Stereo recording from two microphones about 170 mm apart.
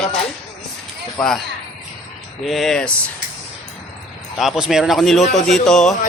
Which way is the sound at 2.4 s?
Centre (ahead or behind).